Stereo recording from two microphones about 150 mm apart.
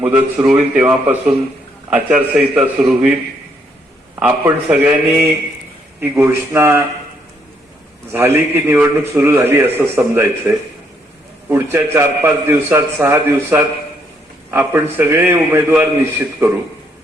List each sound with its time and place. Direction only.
0.0 s a man's voice: 5° right (ahead or behind)
6.2 s a man's voice: 15° right (ahead or behind)
8.1 s a man's voice: 15° right (ahead or behind)